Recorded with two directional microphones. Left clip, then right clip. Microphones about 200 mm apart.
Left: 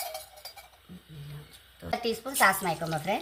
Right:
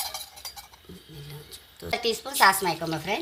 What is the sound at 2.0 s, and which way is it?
Speech, 25° right (ahead or behind).